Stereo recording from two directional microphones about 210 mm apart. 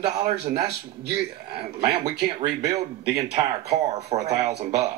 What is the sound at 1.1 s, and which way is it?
Speech, 20° right (ahead or behind).